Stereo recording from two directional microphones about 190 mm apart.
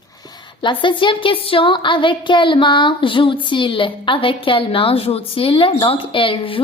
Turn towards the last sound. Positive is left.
turn(degrees=30)  # may be behind; listen again after turning